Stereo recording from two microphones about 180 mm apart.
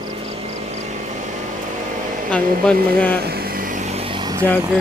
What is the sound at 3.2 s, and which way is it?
Vehicle, 60° right (ahead or behind).